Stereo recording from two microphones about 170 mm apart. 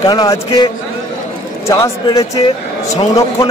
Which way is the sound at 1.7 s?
20° left (ahead or behind).